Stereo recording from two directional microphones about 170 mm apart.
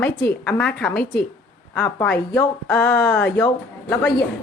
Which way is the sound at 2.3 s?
10° left (ahead or behind).